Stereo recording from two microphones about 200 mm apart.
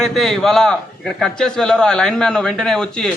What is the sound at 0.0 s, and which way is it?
A man's voice, centre (ahead or behind).